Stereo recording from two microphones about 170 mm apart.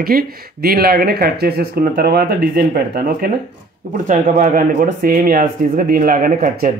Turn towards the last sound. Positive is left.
turn(degrees=-55)  # may be behind; listen again after turning